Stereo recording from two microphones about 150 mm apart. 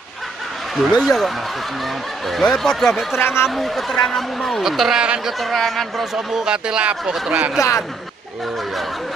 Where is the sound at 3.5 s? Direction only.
Centre (ahead or behind).